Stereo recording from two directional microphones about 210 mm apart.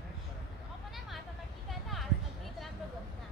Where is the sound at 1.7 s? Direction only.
Centre (ahead or behind).